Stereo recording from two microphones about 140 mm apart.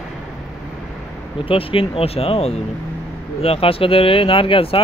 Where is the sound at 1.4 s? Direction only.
40° left (ahead or behind).